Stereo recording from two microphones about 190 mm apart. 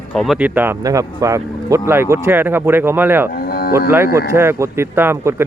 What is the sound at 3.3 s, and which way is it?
Cattle, 55° left (ahead or behind).